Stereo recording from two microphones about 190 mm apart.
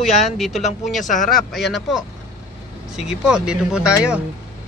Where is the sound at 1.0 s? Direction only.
40° left (ahead or behind).